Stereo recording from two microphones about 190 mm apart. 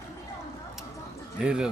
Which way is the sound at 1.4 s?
5° right (ahead or behind).